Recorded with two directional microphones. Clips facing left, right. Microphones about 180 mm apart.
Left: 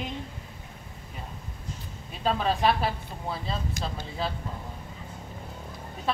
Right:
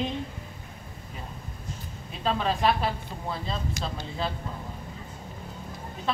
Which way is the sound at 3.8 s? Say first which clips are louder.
Even; 50° left (ahead or behind).